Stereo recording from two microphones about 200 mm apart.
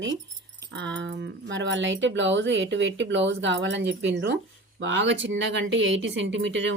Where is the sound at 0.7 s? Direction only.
65° right (ahead or behind).